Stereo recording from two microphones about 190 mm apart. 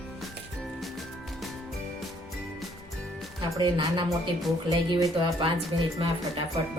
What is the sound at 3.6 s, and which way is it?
Speech, 25° right (ahead or behind).